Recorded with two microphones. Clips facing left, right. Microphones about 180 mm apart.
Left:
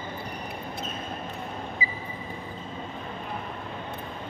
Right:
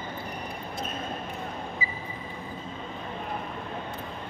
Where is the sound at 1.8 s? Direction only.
45° right (ahead or behind).